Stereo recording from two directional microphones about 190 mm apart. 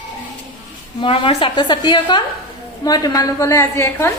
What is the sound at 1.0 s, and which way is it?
A woman's voice, 30° left (ahead or behind).